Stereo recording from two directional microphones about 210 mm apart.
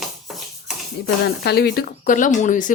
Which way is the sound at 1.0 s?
50° left (ahead or behind).